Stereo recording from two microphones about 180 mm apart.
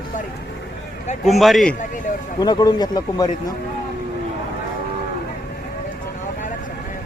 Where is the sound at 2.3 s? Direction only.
20° left (ahead or behind).